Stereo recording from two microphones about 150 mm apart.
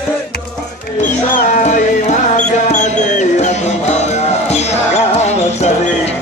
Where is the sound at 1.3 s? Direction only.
55° left (ahead or behind).